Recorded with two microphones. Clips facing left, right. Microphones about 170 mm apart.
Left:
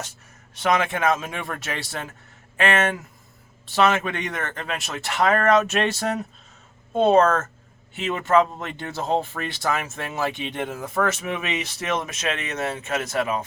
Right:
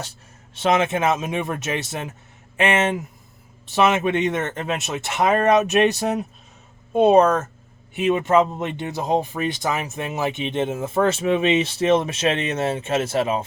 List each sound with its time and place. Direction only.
0.5 s speech: 25° right (ahead or behind)